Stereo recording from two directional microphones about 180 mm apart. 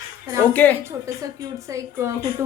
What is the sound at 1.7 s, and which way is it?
Speech, 15° right (ahead or behind).